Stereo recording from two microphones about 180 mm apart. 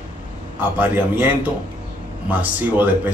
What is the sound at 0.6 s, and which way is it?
A man's voice, 10° right (ahead or behind).